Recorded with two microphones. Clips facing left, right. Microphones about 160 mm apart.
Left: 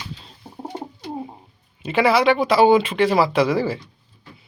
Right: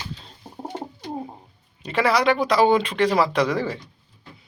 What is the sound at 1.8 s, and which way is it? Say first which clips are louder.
Speech: left 3 dB; 5° left (ahead or behind).